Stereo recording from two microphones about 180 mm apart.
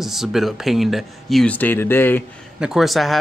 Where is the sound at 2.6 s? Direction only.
Centre (ahead or behind).